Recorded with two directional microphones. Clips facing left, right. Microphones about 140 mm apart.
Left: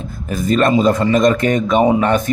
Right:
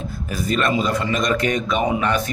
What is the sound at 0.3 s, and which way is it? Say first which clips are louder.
Speech: left 7 dB; 45° left (ahead or behind).